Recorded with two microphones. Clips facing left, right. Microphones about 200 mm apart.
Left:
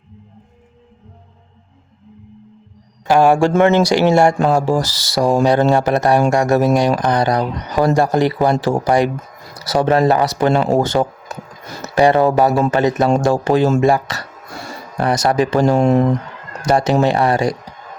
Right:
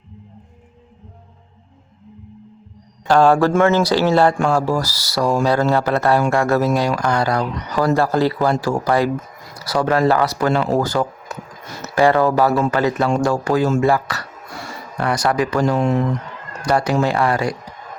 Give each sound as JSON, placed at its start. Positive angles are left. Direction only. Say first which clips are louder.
{"t": 3.1, "sound": "speech", "louder": "left 1 dB", "side_deg": 15}
{"t": 16.6, "sound": "speech", "louder": "left 3 dB", "side_deg": 20}